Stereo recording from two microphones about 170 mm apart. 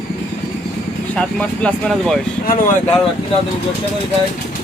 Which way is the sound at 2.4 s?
50° left (ahead or behind).